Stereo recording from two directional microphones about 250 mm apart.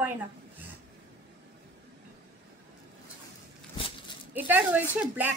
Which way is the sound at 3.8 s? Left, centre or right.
Centre.